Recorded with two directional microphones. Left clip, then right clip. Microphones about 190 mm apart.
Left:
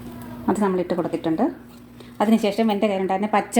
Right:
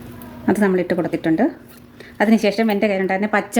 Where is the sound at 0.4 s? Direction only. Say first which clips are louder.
Right 4 dB; 35° right (ahead or behind).